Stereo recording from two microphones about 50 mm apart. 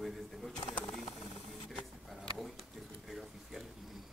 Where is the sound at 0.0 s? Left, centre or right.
Centre.